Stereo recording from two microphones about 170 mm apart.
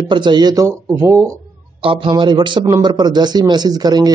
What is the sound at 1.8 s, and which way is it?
Speech, 30° right (ahead or behind).